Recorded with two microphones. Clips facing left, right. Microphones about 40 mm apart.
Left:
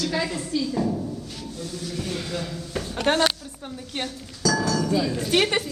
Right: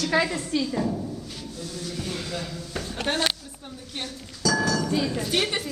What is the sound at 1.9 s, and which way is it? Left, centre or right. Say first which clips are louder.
Speech: left 3 dB; centre.